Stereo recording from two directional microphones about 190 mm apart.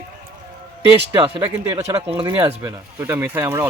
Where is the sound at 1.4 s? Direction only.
10° right (ahead or behind).